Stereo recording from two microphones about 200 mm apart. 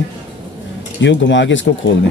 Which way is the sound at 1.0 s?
65° left (ahead or behind).